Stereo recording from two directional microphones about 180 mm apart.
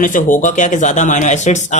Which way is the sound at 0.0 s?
45° left (ahead or behind).